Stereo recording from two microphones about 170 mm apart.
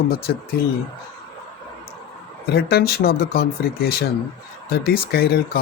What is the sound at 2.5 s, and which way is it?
Speech, 70° left (ahead or behind).